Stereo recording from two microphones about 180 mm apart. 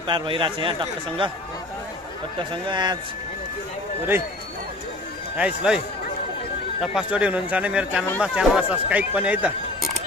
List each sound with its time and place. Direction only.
0.0 s speech: 25° right (ahead or behind)
2.5 s speech: 25° right (ahead or behind)
5.4 s speech: 5° right (ahead or behind)
6.9 s speech: 5° right (ahead or behind)